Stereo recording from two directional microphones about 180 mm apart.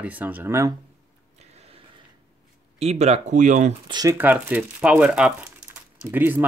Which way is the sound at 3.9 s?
20° right (ahead or behind).